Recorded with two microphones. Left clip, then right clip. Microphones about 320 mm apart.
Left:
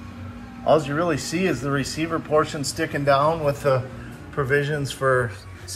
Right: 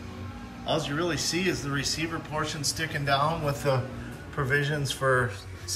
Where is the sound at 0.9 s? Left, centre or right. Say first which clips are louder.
Left 5 dB; centre.